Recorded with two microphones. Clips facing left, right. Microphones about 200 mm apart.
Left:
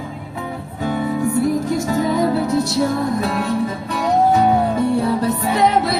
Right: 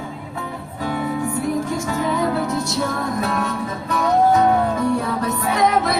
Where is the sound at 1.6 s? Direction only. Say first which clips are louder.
Left 4 dB; 40° left (ahead or behind).